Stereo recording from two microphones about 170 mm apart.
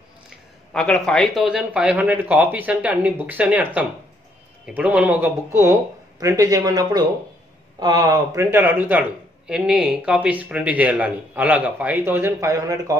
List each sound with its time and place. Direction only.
0.7 s a man's voice: 5° left (ahead or behind); by 12.9 s 20° right (ahead or behind)